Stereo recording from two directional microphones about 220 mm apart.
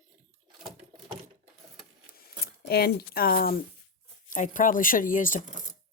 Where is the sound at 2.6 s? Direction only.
45° left (ahead or behind).